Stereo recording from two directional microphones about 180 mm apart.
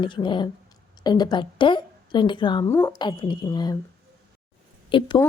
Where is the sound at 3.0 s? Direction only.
25° left (ahead or behind).